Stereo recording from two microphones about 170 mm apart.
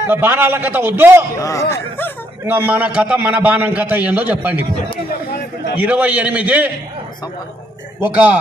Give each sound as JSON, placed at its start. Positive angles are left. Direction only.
{"t": 0.0, "sound": "a man's voice", "side_deg": -10}
{"t": 1.4, "sound": "speech", "side_deg": 20}
{"t": 2.4, "sound": "a man's voice", "side_deg": -10}
{"t": 5.8, "sound": "a man's voice", "side_deg": -10}
{"t": 8.0, "sound": "a man's voice", "side_deg": -10}